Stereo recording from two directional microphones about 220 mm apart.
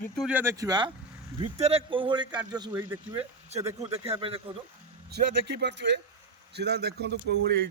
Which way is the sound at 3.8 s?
25° right (ahead or behind).